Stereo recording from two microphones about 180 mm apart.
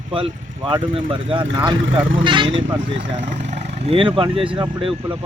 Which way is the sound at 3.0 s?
35° right (ahead or behind).